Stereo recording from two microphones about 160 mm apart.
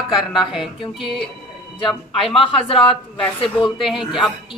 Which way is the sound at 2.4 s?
35° left (ahead or behind).